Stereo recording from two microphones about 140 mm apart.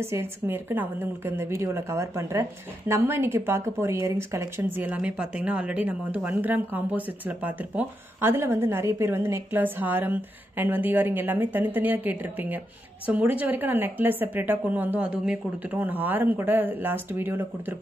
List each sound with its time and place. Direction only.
0.0 s speech: 15° right (ahead or behind)